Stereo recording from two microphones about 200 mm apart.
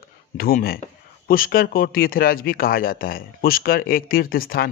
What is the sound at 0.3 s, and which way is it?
Speech, 50° left (ahead or behind).